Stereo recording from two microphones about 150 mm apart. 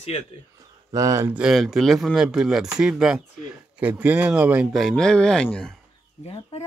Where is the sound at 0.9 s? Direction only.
20° right (ahead or behind).